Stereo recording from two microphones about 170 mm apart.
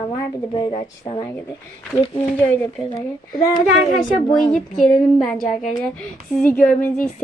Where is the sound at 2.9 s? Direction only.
30° left (ahead or behind).